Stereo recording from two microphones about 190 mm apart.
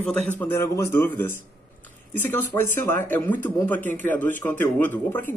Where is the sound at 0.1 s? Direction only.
10° left (ahead or behind).